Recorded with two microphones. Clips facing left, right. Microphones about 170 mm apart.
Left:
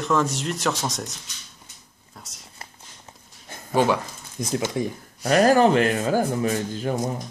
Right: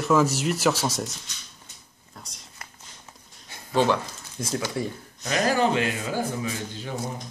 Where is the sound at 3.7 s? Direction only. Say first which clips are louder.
Left 1 dB; 10° left (ahead or behind).